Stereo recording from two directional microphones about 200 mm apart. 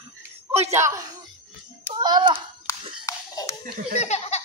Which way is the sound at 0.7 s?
15° right (ahead or behind).